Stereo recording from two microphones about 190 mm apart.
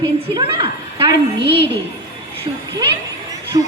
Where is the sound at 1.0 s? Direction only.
55° left (ahead or behind).